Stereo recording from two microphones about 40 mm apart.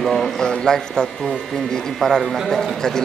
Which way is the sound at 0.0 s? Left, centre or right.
Centre.